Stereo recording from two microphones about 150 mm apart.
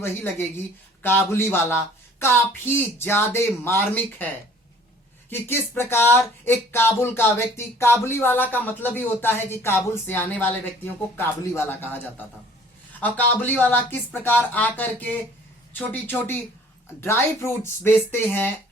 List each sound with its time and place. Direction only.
0.0 s speech: 15° left (ahead or behind)
5.3 s speech: 15° left (ahead or behind)
13.0 s speech: 10° left (ahead or behind)